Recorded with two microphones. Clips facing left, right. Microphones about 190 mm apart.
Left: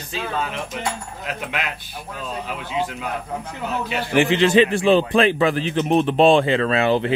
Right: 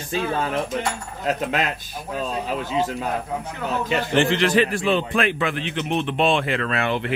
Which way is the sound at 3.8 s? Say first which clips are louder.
Left 1 dB; 10° left (ahead or behind).